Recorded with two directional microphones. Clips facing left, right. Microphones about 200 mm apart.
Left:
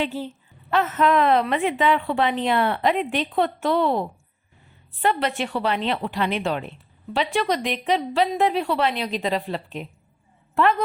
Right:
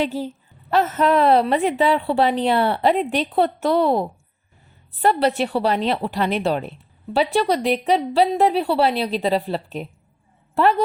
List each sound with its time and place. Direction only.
0.0 s a woman's voice: 40° right (ahead or behind)